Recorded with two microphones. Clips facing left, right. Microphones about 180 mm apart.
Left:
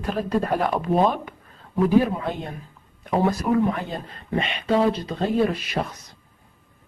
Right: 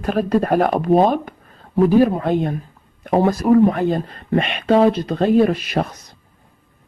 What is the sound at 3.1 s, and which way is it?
Speech, 40° right (ahead or behind).